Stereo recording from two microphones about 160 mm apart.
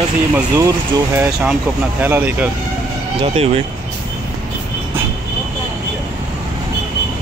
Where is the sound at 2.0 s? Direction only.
10° right (ahead or behind).